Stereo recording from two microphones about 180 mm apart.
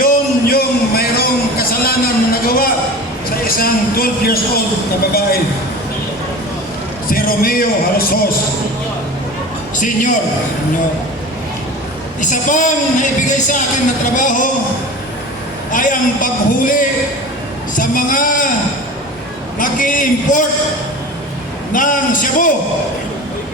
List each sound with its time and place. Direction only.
0.0 s a sound: 55° left (ahead or behind)
3.4 s speech: 55° left (ahead or behind)
7.1 s a woman's voice: 55° left (ahead or behind)
9.7 s a woman's voice: 45° left (ahead or behind)
12.2 s a woman's voice: 45° left (ahead or behind)
15.7 s a woman's voice: 45° left (ahead or behind)
19.5 s a woman's voice: 45° left (ahead or behind)
21.7 s a woman's voice: 45° left (ahead or behind)